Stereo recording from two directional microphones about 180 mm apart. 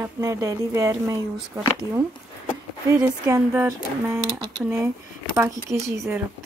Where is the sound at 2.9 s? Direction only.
20° right (ahead or behind).